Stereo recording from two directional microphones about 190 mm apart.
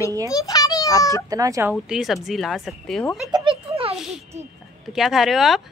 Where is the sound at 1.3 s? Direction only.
15° right (ahead or behind).